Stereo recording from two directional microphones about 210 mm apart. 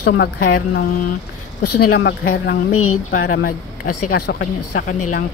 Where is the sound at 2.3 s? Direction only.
50° left (ahead or behind).